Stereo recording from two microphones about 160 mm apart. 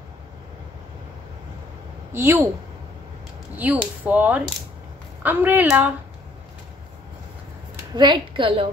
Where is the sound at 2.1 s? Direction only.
15° right (ahead or behind).